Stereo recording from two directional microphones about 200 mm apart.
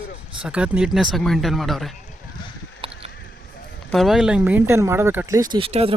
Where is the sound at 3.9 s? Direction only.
Centre (ahead or behind).